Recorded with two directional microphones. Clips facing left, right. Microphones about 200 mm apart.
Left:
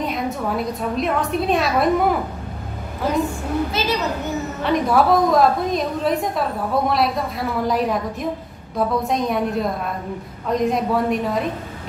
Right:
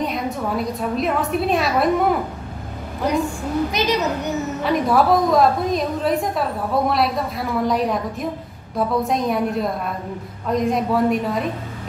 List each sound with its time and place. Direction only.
0.0 s a woman's voice: centre (ahead or behind)
3.7 s a child's voice: 20° right (ahead or behind)
4.6 s a woman's voice: centre (ahead or behind)